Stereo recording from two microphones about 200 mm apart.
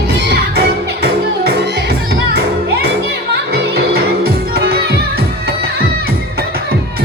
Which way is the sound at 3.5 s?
50° right (ahead or behind).